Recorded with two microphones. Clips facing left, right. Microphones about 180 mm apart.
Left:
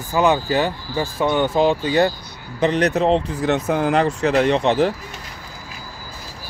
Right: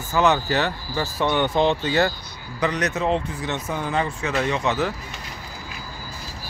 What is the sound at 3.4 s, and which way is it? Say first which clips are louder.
Speech: left 8 dB; 60° left (ahead or behind).